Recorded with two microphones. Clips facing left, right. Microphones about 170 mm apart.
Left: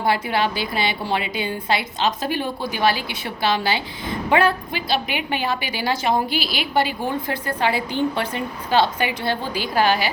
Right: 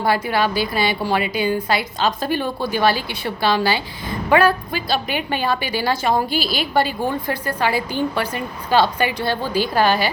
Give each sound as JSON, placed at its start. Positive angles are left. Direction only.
{"t": 0.0, "sound": "a woman's voice", "side_deg": 20}
{"t": 4.7, "sound": "a woman's voice", "side_deg": -45}
{"t": 5.3, "sound": "a woman's voice", "side_deg": 15}
{"t": 6.3, "sound": "a woman's voice", "side_deg": -45}
{"t": 7.4, "sound": "a woman's voice", "side_deg": 20}